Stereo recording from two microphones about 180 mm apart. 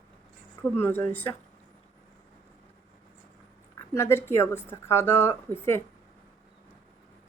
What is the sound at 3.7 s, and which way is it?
A woman's voice, 15° left (ahead or behind).